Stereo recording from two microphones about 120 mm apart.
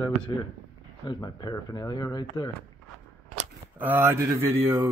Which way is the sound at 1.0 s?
40° left (ahead or behind).